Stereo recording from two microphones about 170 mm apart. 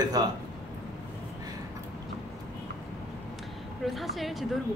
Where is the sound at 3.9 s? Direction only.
Centre (ahead or behind).